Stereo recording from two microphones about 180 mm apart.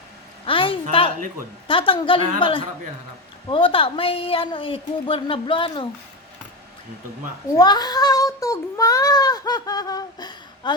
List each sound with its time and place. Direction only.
0.4 s a sound: 30° left (ahead or behind)
1.6 s speech: 30° left (ahead or behind)
7.5 s speech: 20° left (ahead or behind)